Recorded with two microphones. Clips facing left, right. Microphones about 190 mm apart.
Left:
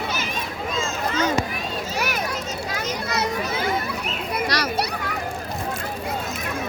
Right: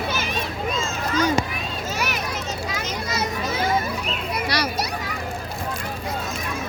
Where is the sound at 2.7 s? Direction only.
60° left (ahead or behind).